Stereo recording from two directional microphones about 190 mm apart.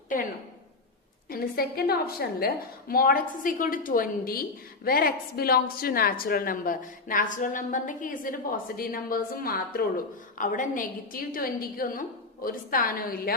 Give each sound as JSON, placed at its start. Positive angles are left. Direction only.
{"t": 1.3, "sound": "a woman's voice", "side_deg": 50}